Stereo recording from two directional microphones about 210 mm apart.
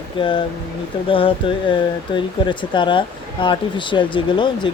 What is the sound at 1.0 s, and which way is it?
Speech, 25° left (ahead or behind).